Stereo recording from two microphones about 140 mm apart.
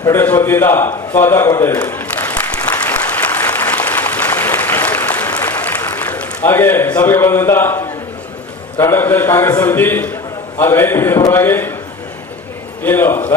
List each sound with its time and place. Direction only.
0.0 s a sound: 15° left (ahead or behind)
8.8 s a man's voice: 15° left (ahead or behind)
12.8 s a man's voice: 15° left (ahead or behind)